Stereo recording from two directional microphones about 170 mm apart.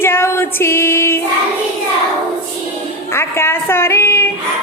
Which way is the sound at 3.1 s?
15° left (ahead or behind).